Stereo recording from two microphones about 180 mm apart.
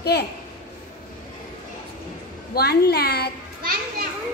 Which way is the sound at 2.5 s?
60° left (ahead or behind).